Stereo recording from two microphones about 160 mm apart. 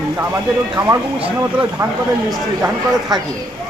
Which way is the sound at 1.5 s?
10° right (ahead or behind).